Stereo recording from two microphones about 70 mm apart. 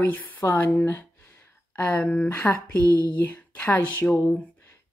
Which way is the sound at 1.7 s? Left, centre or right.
Left.